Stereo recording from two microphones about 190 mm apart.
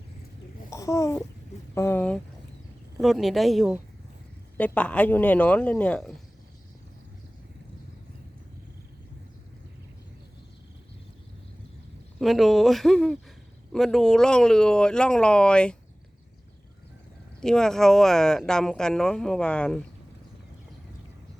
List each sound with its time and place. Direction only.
0.7 s a child's voice: 15° left (ahead or behind)
12.2 s speech: centre (ahead or behind)
17.4 s speech: 5° left (ahead or behind)